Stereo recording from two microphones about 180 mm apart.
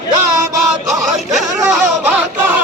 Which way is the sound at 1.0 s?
Centre (ahead or behind).